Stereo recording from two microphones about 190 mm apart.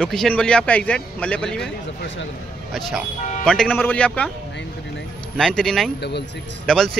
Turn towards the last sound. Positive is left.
turn(degrees=5)  # may be behind; listen again after turning